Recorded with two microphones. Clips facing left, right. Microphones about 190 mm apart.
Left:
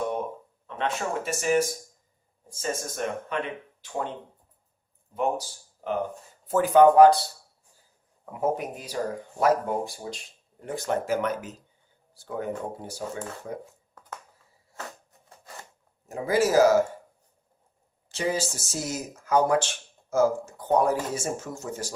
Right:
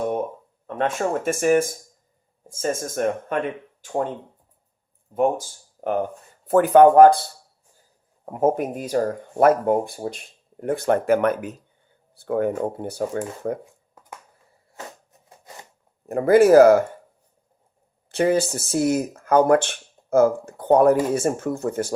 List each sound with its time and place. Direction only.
0.7 s speech: 50° right (ahead or behind)
5.1 s speech: 50° right (ahead or behind)
16.0 s speech: 60° right (ahead or behind)
18.1 s speech: 60° right (ahead or behind)